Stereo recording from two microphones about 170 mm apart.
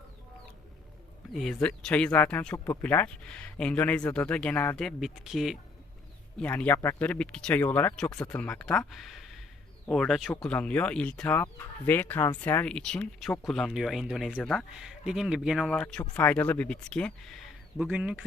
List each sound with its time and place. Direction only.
1.3 s speech: centre (ahead or behind)
6.4 s speech: 10° left (ahead or behind); by 18.3 s 5° right (ahead or behind)